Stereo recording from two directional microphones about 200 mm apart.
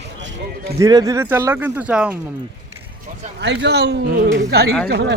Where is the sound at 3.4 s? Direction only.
60° right (ahead or behind).